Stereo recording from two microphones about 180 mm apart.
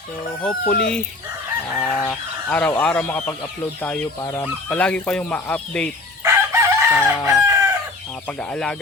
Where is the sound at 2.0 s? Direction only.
10° left (ahead or behind).